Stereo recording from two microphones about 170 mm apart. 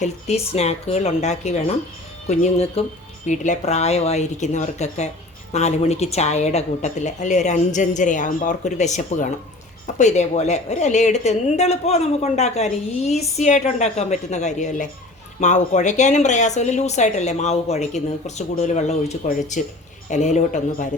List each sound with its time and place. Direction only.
0.0 s a woman's voice: 40° left (ahead or behind)